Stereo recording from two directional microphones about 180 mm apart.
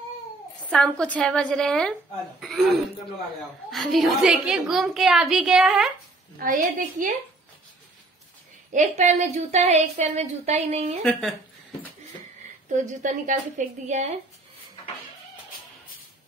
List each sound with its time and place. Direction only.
0.6 s a woman's voice: 5° left (ahead or behind)
6.3 s a woman's voice: 50° right (ahead or behind)
8.7 s a woman's voice: 40° right (ahead or behind)
11.0 s a woman's voice: centre (ahead or behind)
12.6 s a woman's voice: 45° right (ahead or behind)